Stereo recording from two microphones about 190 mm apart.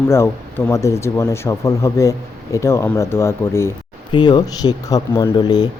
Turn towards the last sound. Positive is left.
turn(degrees=20)  # may be behind; listen again after turning